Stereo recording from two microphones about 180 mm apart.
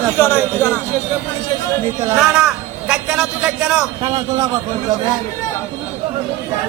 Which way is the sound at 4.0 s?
20° right (ahead or behind).